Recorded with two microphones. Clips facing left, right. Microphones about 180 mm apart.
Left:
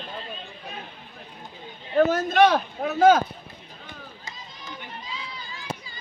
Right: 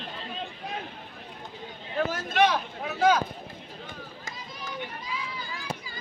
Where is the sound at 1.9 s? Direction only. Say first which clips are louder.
Left 7 dB; 45° left (ahead or behind).